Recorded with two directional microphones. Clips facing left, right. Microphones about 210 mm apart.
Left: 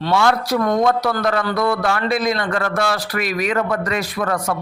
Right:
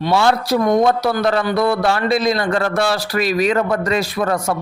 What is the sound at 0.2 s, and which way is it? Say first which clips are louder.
A man's voice: right 2 dB; 30° right (ahead or behind).